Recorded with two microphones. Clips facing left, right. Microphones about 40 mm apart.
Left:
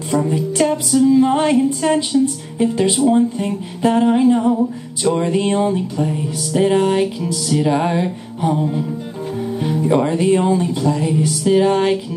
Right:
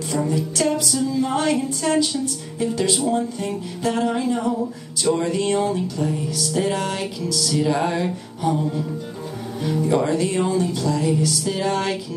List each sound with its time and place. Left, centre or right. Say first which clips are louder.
0.3 s music: left 2 dB; left